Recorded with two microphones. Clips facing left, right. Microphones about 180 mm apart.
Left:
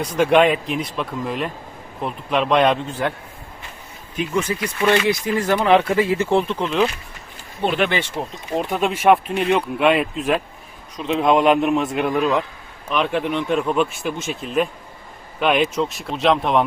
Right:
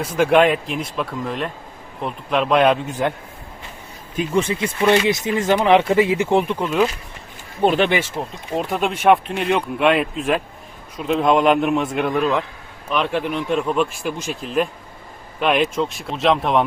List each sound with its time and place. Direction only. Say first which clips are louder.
0.2 s speech: even; centre (ahead or behind)
3.0 s a man's voice: right 2 dB; 20° right (ahead or behind)
4.4 s speech: right 2 dB; 25° right (ahead or behind); by 6.8 s 10° right (ahead or behind)
7.6 s speech: right 3 dB; 40° right (ahead or behind)
7.9 s speech: right 2 dB; 10° right (ahead or behind)